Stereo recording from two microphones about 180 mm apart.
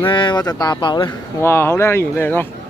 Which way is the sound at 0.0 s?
25° left (ahead or behind).